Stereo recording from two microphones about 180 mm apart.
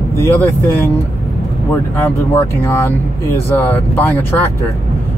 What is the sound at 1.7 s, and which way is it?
Speech, 10° left (ahead or behind).